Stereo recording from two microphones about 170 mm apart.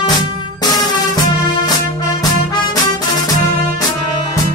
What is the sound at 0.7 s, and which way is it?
Music, 25° left (ahead or behind).